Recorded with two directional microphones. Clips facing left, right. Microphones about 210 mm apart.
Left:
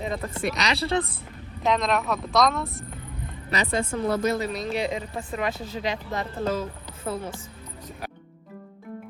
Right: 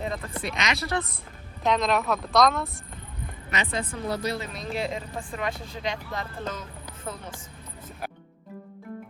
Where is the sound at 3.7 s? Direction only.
50° left (ahead or behind).